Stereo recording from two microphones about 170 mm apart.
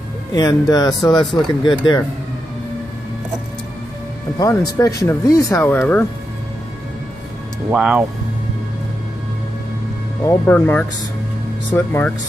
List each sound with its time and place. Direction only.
0.3 s speech: 25° left (ahead or behind)
4.4 s speech: 20° left (ahead or behind)
7.7 s speech: 5° right (ahead or behind)
10.2 s speech: 10° left (ahead or behind)